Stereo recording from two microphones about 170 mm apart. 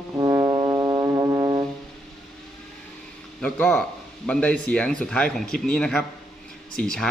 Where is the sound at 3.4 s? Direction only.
5° left (ahead or behind).